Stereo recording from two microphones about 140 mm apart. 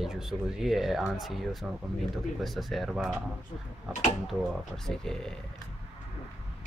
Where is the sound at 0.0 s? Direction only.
Centre (ahead or behind).